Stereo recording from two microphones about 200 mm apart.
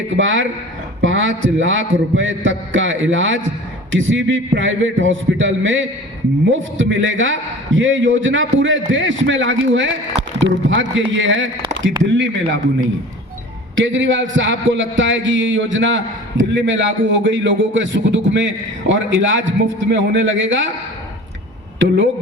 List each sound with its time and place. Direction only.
0.2 s a man's voice: 75° right (ahead or behind)
11.7 s a sound: 70° right (ahead or behind)
12.1 s a man's voice: 65° right (ahead or behind)
13.7 s a man's voice: 70° right (ahead or behind)
21.8 s a man's voice: 70° right (ahead or behind)